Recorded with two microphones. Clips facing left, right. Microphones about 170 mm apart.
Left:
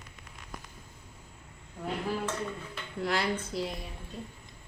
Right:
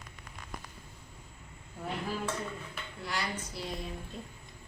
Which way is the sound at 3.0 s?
60° left (ahead or behind).